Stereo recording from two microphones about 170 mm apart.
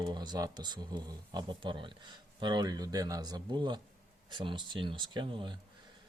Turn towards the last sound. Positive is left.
turn(degrees=-30)  # may be behind; listen again after turning